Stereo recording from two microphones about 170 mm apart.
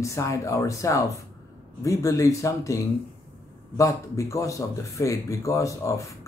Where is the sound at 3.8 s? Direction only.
20° left (ahead or behind).